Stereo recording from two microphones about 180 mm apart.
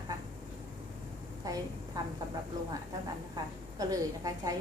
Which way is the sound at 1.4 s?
20° right (ahead or behind).